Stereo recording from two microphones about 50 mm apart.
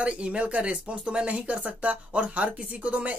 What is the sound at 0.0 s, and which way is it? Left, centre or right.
Speech, right.